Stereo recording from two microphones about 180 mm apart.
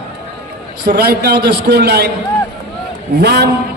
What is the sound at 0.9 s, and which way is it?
A man's voice, 60° right (ahead or behind).